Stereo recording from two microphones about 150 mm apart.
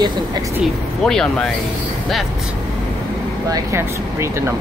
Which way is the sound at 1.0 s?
5° left (ahead or behind).